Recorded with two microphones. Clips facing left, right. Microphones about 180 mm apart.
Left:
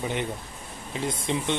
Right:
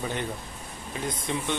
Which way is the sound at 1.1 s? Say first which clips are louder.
Left 3 dB; 25° left (ahead or behind).